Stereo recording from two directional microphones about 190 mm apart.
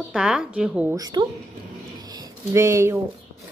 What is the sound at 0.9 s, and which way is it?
Speech, 20° right (ahead or behind).